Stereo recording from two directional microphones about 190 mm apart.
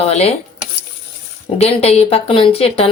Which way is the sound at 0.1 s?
35° left (ahead or behind).